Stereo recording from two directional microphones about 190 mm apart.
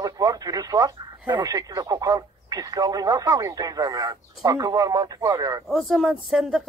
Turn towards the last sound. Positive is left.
turn(degrees=0)  # may be behind; listen again after turning